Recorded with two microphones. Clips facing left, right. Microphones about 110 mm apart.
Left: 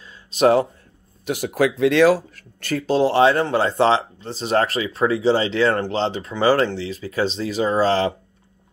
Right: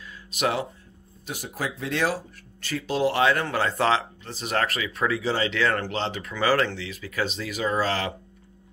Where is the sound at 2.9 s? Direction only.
30° left (ahead or behind).